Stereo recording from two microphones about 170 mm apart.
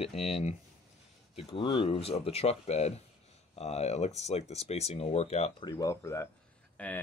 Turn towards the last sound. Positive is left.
turn(degrees=10)  # may be behind; listen again after turning